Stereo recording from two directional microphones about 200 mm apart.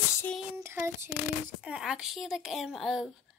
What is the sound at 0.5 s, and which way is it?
Child singing, 15° right (ahead or behind).